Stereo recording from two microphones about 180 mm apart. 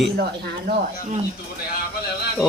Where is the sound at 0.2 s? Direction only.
65° right (ahead or behind).